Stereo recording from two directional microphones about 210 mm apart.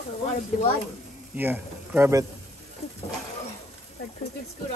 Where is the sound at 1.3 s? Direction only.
10° right (ahead or behind).